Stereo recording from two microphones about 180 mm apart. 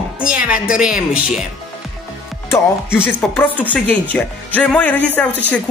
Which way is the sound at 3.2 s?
10° left (ahead or behind).